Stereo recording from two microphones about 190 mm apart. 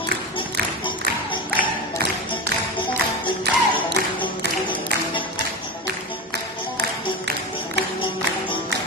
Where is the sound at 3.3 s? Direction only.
25° left (ahead or behind).